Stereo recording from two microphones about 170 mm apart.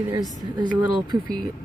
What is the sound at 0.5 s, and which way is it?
Speech, 25° right (ahead or behind).